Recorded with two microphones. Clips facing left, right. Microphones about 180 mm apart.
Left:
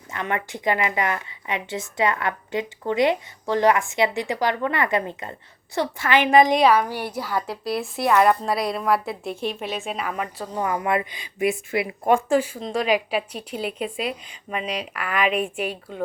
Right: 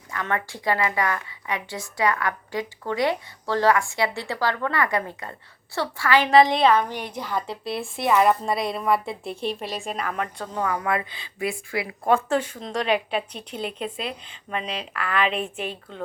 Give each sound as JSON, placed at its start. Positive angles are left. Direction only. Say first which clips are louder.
{"t": 0.1, "sound": "a woman's voice", "louder": "left 1 dB", "side_deg": 20}
{"t": 9.3, "sound": "speech", "louder": "even", "side_deg": -30}
{"t": 9.6, "sound": "a woman's voice", "louder": "left 1 dB", "side_deg": 0}
{"t": 10.6, "sound": "a woman's voice", "louder": "left 2 dB", "side_deg": 20}